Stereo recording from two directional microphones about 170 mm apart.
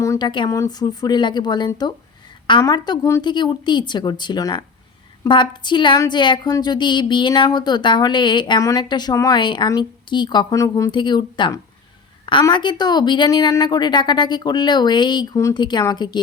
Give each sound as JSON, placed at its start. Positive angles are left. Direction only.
{"t": 0.0, "sound": "a woman's voice", "side_deg": 20}